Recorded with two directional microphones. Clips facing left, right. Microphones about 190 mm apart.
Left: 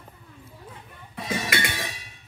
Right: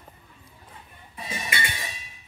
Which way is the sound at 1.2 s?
80° left.